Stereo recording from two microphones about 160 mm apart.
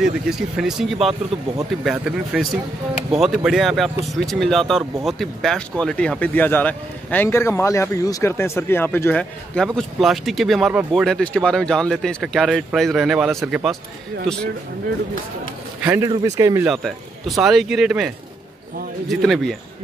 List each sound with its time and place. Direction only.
0.0 s speech: centre (ahead or behind)
15.8 s speech: 15° right (ahead or behind)
16.6 s speech: centre (ahead or behind)